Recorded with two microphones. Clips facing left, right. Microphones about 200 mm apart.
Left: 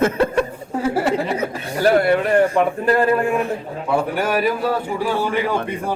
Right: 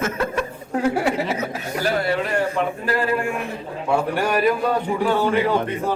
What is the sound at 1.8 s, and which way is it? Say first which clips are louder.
Speech: left 7 dB; 55° left (ahead or behind).